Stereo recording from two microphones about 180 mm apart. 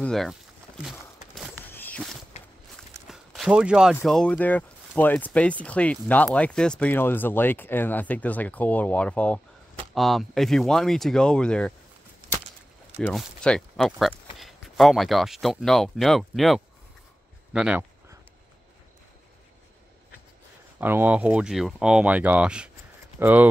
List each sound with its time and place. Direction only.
0.0 s speech: centre (ahead or behind)
1.7 s walk: 10° left (ahead or behind)
3.1 s a sound: 5° right (ahead or behind)
3.9 s speech: 5° left (ahead or behind)
13.0 s speech: centre (ahead or behind)
20.8 s speech: 10° right (ahead or behind)